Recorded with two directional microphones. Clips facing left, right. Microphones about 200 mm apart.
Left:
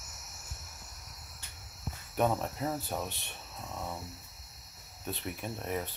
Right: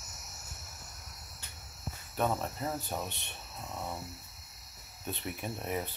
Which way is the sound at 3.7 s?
5° right (ahead or behind).